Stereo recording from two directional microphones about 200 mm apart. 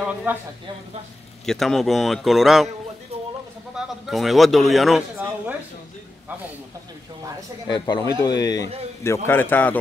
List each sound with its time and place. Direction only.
0.0 s a sound: 5° right (ahead or behind)
1.4 s speech: centre (ahead or behind)
3.7 s speech: centre (ahead or behind)
7.6 s a man's voice: 20° left (ahead or behind)